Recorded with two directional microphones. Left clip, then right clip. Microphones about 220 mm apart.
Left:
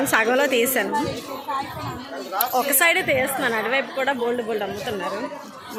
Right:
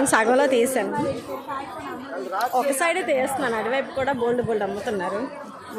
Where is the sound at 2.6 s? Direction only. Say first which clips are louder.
Left 3 dB; 5° right (ahead or behind).